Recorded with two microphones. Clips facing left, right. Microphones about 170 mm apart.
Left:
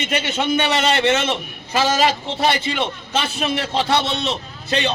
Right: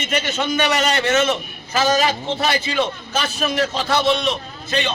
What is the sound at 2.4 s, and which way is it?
A man's voice, 25° left (ahead or behind).